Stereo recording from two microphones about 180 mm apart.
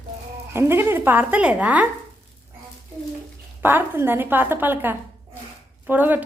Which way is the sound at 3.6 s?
10° right (ahead or behind).